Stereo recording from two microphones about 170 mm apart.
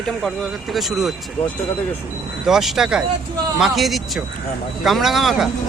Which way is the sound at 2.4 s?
Centre (ahead or behind).